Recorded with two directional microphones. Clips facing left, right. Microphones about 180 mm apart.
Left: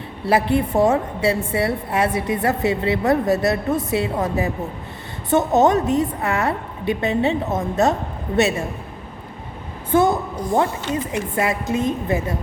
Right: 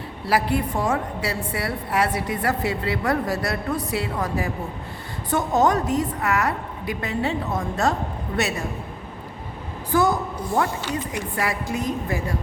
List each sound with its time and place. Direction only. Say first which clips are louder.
0.3 s a woman's voice: left 4 dB; 25° left (ahead or behind)
9.9 s a woman's voice: left 4 dB; 25° left (ahead or behind)